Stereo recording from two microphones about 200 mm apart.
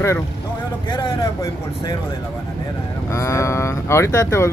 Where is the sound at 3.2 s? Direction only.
15° left (ahead or behind).